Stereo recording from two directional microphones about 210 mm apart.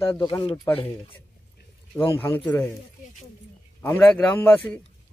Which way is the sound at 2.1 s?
10° left (ahead or behind).